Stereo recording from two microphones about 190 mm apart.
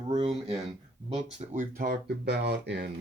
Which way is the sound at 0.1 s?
30° right (ahead or behind).